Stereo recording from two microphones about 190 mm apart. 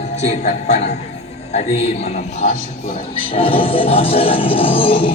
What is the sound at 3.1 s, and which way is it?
Music, 30° left (ahead or behind).